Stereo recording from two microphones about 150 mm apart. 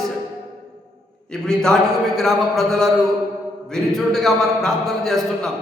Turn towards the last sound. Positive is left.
turn(degrees=0)  # may be behind; listen again after turning